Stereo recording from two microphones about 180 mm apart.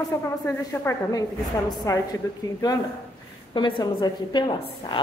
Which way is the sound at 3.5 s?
25° left (ahead or behind).